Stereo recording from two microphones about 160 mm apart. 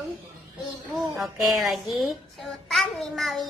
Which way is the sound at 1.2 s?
Centre (ahead or behind).